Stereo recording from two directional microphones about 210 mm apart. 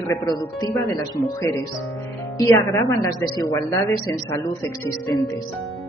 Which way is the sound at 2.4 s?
15° left (ahead or behind).